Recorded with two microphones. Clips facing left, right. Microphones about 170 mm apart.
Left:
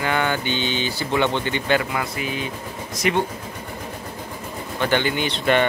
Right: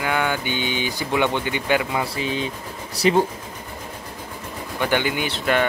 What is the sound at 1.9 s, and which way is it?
Speech, 25° right (ahead or behind).